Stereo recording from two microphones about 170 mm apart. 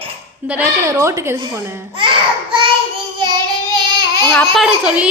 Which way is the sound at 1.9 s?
30° right (ahead or behind).